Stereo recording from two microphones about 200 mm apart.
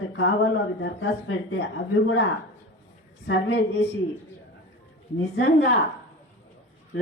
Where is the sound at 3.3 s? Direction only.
70° left (ahead or behind).